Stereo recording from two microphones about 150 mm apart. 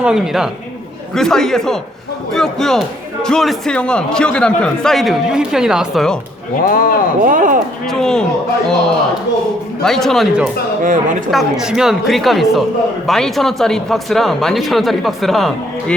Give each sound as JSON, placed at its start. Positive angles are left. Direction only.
{"t": 0.0, "sound": "a man's voice", "side_deg": -5}
{"t": 6.6, "sound": "speech", "side_deg": 70}
{"t": 7.2, "sound": "speech", "side_deg": -65}
{"t": 7.9, "sound": "a man's voice", "side_deg": 5}